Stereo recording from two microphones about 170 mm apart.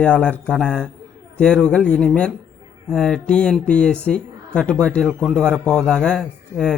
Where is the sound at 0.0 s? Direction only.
5° left (ahead or behind).